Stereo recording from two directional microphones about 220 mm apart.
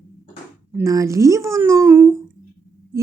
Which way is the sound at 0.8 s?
15° right (ahead or behind).